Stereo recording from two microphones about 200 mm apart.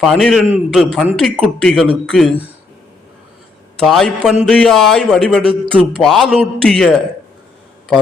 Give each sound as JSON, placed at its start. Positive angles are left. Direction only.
{"t": 0.0, "sound": "a man's voice", "side_deg": 0}
{"t": 3.8, "sound": "a man's voice", "side_deg": 0}